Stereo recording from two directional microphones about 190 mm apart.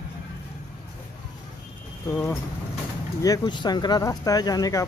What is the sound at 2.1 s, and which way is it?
Speech, 15° left (ahead or behind).